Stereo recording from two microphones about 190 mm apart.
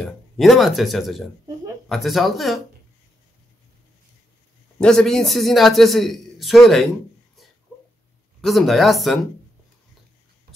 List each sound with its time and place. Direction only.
0.0 s a man's voice: centre (ahead or behind)
4.7 s a man's voice: 5° left (ahead or behind)
8.4 s a man's voice: centre (ahead or behind)